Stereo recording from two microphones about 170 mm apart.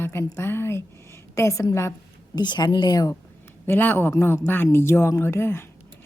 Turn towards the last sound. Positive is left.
turn(degrees=15)  # may be behind; listen again after turning